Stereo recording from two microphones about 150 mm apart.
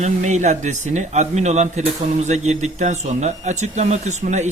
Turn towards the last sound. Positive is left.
turn(degrees=-50)  # may be behind; listen again after turning